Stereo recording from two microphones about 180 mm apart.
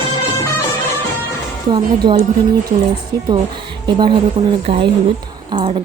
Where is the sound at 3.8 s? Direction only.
25° right (ahead or behind).